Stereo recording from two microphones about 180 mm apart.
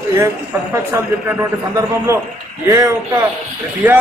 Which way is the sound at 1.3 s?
15° right (ahead or behind).